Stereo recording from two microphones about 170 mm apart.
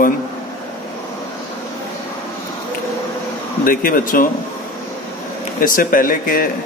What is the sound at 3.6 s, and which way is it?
Speech, 55° left (ahead or behind).